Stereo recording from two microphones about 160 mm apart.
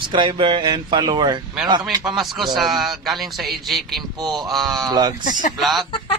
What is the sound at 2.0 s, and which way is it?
A man's voice, centre (ahead or behind).